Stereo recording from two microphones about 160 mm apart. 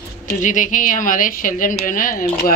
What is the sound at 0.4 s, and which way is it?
A woman's voice, 55° left (ahead or behind).